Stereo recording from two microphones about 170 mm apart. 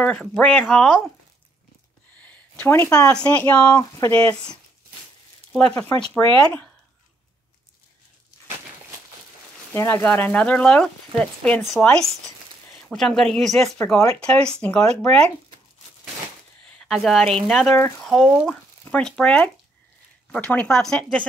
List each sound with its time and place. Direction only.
0.0 s speech: 5° left (ahead or behind)
2.1 s a sound: 10° left (ahead or behind)
3.1 s speech: 5° left (ahead or behind)
3.7 s speech: 20° left (ahead or behind)
5.7 s speech: 10° left (ahead or behind)
9.8 s speech: 15° left (ahead or behind)
13.7 s speech: 15° left (ahead or behind)
16.6 s a sound: 5° left (ahead or behind)
17.5 s speech: centre (ahead or behind)
17.7 s speech: 15° left (ahead or behind)
18.0 s speech: centre (ahead or behind)